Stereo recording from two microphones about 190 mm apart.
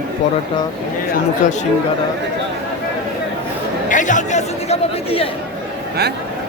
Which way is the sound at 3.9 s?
40° left (ahead or behind).